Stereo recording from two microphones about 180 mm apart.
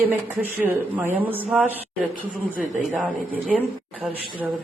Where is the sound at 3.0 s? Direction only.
10° right (ahead or behind).